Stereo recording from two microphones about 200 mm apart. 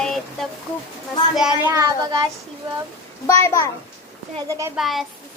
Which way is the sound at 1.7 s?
20° right (ahead or behind).